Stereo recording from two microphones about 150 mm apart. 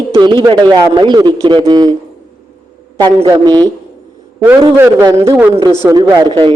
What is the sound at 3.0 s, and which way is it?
Speech, 25° right (ahead or behind).